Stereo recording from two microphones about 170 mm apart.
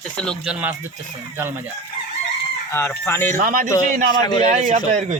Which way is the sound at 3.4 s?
55° right (ahead or behind).